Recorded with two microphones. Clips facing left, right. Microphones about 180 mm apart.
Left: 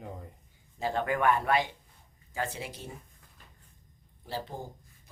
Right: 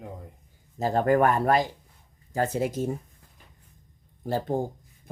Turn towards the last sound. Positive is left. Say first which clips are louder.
# right 11 dB
turn(degrees=-50)  # may be behind; listen again after turning